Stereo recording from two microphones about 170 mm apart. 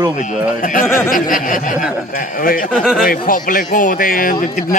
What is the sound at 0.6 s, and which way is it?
Speech, 55° left (ahead or behind).